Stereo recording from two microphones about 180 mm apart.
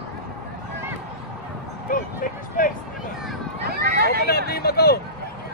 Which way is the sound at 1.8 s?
50° left (ahead or behind).